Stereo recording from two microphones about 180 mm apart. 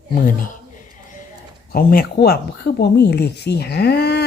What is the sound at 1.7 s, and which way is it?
Speech, 55° left (ahead or behind).